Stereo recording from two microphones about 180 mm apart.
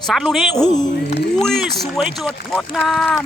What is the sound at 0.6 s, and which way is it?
Speech, 20° left (ahead or behind).